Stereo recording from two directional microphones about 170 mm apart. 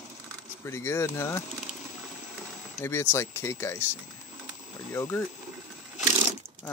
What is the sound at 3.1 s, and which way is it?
A man's voice, 15° left (ahead or behind).